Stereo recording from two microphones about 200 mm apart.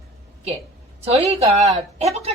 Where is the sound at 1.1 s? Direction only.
30° right (ahead or behind).